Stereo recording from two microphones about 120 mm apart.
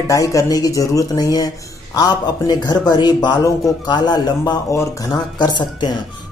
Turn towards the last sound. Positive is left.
turn(degrees=35)  # may be behind; listen again after turning